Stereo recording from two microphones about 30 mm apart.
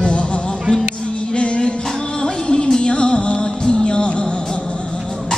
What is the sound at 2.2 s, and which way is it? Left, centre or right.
Music, left.